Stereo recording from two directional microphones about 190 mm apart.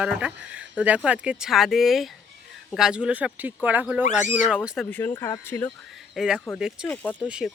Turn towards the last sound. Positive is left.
turn(degrees=-5)  # may be behind; listen again after turning